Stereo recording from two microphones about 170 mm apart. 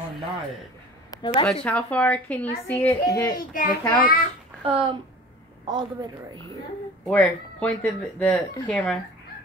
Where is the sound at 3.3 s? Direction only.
55° left (ahead or behind).